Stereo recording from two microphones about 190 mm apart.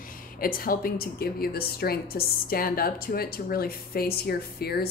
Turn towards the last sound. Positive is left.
turn(degrees=55)  # may be behind; listen again after turning